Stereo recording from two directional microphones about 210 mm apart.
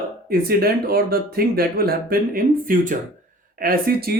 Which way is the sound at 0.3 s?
45° right (ahead or behind).